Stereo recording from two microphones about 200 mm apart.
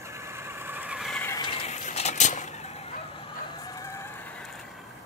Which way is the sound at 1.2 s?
15° left (ahead or behind).